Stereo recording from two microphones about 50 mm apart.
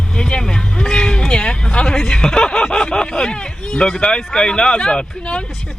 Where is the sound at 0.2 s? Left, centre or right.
Centre.